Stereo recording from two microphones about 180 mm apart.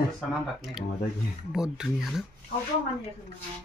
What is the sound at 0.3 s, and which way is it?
Speech, centre (ahead or behind).